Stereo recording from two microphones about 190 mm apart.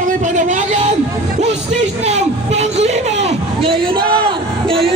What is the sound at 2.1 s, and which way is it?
Speech, 35° right (ahead or behind).